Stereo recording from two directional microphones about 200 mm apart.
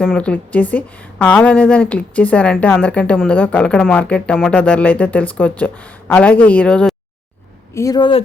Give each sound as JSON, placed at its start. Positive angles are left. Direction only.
{"t": 0.0, "sound": "a woman's voice", "side_deg": 5}
{"t": 7.7, "sound": "speech", "side_deg": 15}